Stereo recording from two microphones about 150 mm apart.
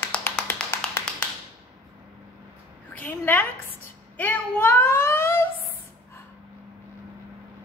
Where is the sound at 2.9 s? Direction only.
10° left (ahead or behind).